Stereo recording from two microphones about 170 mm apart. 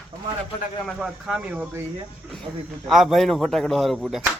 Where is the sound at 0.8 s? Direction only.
5° right (ahead or behind).